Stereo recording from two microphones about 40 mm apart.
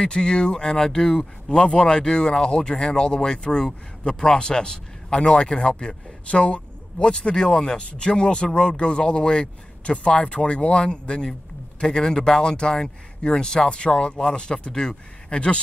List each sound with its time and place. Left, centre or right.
0.0 s speech: left